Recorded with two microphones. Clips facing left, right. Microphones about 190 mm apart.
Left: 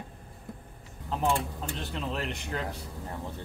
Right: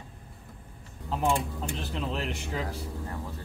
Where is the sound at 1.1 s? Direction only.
Centre (ahead or behind).